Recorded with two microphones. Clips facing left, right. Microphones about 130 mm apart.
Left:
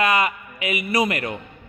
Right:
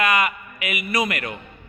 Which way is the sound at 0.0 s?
30° left (ahead or behind).